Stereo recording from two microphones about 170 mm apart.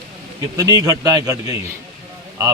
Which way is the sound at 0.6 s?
20° right (ahead or behind).